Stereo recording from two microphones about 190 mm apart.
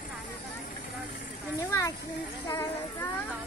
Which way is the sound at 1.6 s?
15° left (ahead or behind).